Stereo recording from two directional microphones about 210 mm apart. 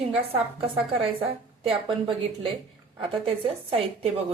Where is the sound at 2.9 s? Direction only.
25° right (ahead or behind).